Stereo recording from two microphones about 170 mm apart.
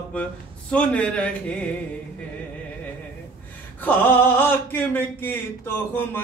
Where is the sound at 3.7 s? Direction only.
10° left (ahead or behind).